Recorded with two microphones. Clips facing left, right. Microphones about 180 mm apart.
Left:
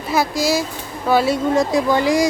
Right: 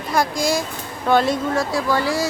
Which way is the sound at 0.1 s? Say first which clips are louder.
Left 2 dB; 5° left (ahead or behind).